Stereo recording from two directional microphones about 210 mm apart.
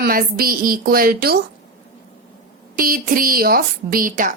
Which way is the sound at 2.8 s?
40° right (ahead or behind).